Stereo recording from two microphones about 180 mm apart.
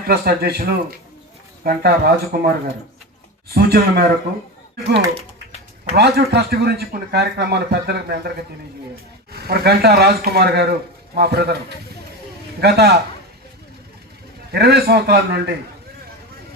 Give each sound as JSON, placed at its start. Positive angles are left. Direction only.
{"t": 0.1, "sound": "speech", "side_deg": -60}
{"t": 3.5, "sound": "speech", "side_deg": -60}
{"t": 6.0, "sound": "speech", "side_deg": -65}
{"t": 9.3, "sound": "speech", "side_deg": -60}
{"t": 12.5, "sound": "speech", "side_deg": -60}
{"t": 14.5, "sound": "speech", "side_deg": -60}